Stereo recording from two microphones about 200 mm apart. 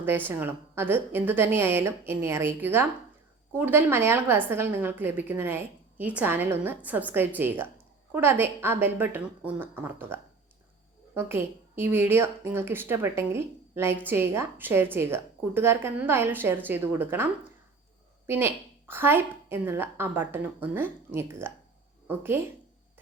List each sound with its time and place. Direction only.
0.3 s a woman's voice: 10° right (ahead or behind)
18.3 s a woman's voice: 10° right (ahead or behind)